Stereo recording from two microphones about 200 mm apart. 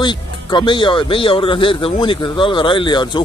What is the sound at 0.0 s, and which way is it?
Speech, 20° left (ahead or behind).